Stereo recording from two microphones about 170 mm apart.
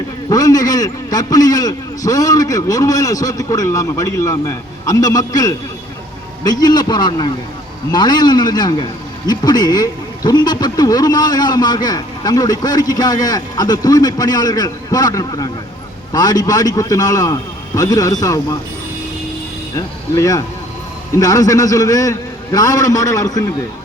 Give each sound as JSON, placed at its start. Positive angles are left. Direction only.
{"t": 0.3, "sound": "a man's voice", "side_deg": 20}
{"t": 19.7, "sound": "a man's voice", "side_deg": 20}